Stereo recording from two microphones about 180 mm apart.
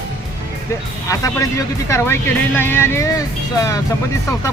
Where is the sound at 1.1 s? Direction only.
15° left (ahead or behind).